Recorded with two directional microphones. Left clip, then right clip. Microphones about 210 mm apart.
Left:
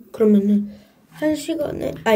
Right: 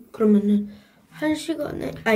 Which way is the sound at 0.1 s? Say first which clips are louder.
Left 3 dB; 40° left (ahead or behind).